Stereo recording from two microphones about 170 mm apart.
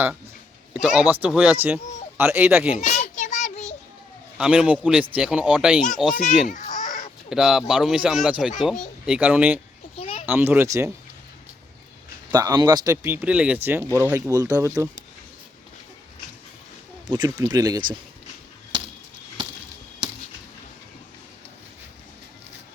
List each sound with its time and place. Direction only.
0.7 s speech: 5° right (ahead or behind)
2.7 s a sound: 45° left (ahead or behind)
4.4 s speech: 5° right (ahead or behind)
6.5 s a sound: 50° left (ahead or behind)
7.3 s speech: centre (ahead or behind)
10.0 s a sound: 35° left (ahead or behind)
10.2 s speech: 10° right (ahead or behind)
12.3 s speech: 25° right (ahead or behind)
13.2 s speech: 5° right (ahead or behind)
17.1 s speech: 25° right (ahead or behind)